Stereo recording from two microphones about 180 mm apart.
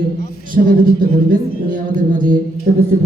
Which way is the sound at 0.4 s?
50° right (ahead or behind).